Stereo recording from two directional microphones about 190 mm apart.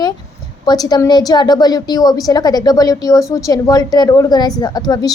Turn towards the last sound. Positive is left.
turn(degrees=20)  # may be behind; listen again after turning